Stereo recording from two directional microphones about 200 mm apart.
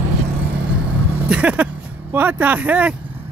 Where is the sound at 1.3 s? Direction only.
5° right (ahead or behind).